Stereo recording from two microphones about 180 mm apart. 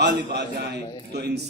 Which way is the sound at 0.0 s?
70° right (ahead or behind).